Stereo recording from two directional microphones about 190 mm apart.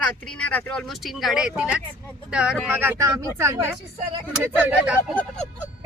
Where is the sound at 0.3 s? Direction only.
5° left (ahead or behind).